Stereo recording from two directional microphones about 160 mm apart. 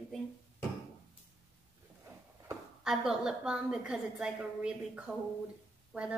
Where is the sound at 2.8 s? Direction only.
5° right (ahead or behind).